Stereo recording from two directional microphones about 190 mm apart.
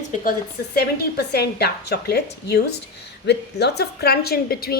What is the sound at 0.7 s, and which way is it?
A woman's voice, 55° left (ahead or behind).